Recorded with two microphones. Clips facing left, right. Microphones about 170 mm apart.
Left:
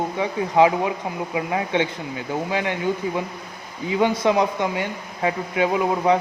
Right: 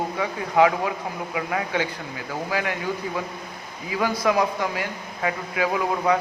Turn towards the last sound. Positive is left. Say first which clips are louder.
# left 3 dB
turn(degrees=25)  # may be behind; listen again after turning